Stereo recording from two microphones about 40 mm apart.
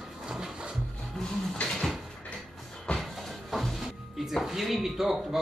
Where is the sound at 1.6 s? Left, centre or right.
Centre.